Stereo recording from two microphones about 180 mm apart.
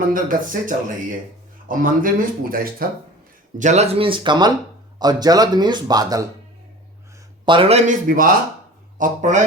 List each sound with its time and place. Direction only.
0.1 s speech: 50° right (ahead or behind)
3.6 s speech: 40° right (ahead or behind); by 6.2 s 20° right (ahead or behind)
7.4 s a man's voice: 30° right (ahead or behind)
8.0 s speech: 50° right (ahead or behind)